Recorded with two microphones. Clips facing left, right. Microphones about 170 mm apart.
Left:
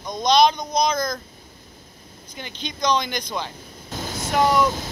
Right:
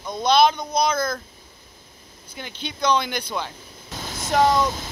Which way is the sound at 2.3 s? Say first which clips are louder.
Even; 10° right (ahead or behind).